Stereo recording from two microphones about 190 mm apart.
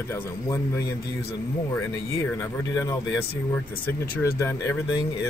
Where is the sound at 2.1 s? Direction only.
15° left (ahead or behind).